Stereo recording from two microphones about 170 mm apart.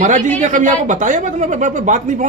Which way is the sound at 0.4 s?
50° right (ahead or behind).